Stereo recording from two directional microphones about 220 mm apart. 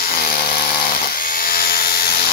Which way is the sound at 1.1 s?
40° left (ahead or behind).